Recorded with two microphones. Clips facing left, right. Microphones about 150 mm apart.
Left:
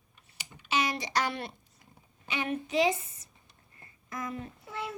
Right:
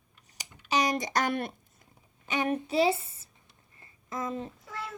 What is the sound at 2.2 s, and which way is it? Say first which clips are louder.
A child's voice: right 4 dB; 40° right (ahead or behind).